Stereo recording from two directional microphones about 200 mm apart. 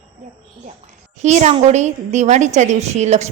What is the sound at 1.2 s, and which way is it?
A woman's voice, 35° right (ahead or behind).